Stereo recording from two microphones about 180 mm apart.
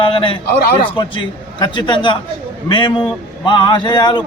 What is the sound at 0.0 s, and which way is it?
A man's voice, 30° left (ahead or behind).